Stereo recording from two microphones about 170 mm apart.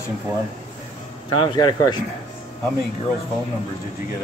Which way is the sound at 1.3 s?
25° left (ahead or behind).